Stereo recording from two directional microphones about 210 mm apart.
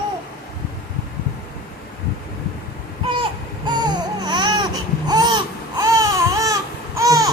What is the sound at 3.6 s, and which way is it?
Baby cry, 20° right (ahead or behind).